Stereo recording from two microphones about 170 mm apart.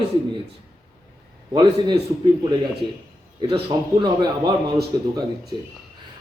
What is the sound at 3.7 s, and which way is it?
A man's voice, 25° right (ahead or behind).